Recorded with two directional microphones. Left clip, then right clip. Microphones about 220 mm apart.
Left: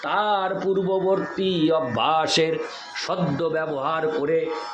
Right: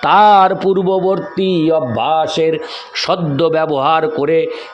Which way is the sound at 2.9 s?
40° right (ahead or behind).